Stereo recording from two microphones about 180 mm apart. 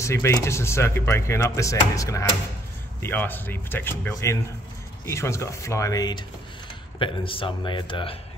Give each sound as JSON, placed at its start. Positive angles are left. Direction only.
{"t": 0.0, "sound": "speech", "side_deg": 15}